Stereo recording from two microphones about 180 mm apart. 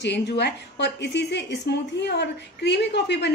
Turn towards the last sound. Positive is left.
turn(degrees=70)  # may be behind; listen again after turning